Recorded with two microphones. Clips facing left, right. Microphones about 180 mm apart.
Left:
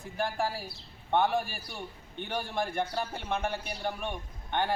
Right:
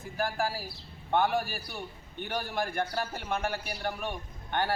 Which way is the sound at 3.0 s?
5° right (ahead or behind).